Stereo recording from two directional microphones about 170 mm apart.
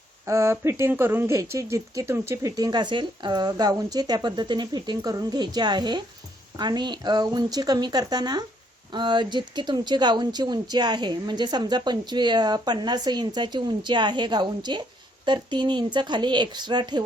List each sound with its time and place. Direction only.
0.3 s speech: 15° right (ahead or behind)